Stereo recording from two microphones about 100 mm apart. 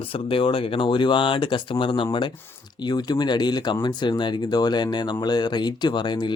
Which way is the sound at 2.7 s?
45° left (ahead or behind).